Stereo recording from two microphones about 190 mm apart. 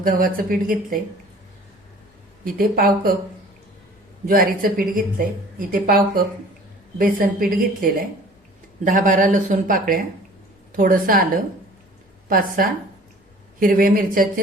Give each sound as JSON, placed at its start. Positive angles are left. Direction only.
{"t": 0.0, "sound": "speech", "side_deg": -45}
{"t": 2.4, "sound": "speech", "side_deg": -50}
{"t": 4.3, "sound": "speech", "side_deg": -50}
{"t": 12.3, "sound": "speech", "side_deg": -50}